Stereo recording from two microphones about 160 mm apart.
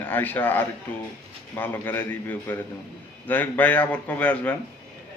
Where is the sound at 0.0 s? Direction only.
10° left (ahead or behind).